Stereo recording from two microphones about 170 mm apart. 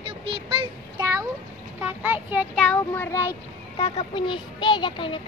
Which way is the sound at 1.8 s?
10° right (ahead or behind).